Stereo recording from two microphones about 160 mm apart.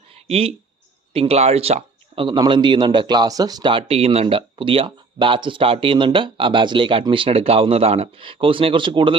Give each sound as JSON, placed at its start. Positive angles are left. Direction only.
{"t": 0.3, "sound": "speech", "side_deg": -40}